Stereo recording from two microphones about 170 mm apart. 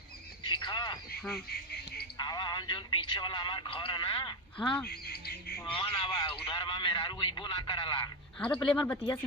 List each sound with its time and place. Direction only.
0.4 s a sound: 25° left (ahead or behind)
2.1 s a man's voice: 25° left (ahead or behind)
4.9 s speech: 70° left (ahead or behind)
5.6 s a man's voice: 30° left (ahead or behind)
8.4 s speech: 10° left (ahead or behind)